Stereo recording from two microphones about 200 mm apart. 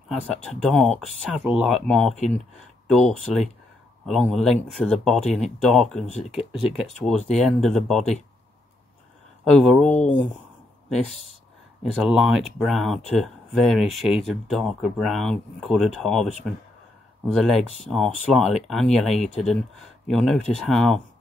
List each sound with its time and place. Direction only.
0.1 s speech: centre (ahead or behind)
9.4 s speech: 5° left (ahead or behind)
11.8 s speech: centre (ahead or behind)